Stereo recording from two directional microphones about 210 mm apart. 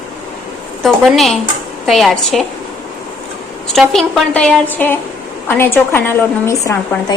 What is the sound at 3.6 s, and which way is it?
A woman's voice, centre (ahead or behind).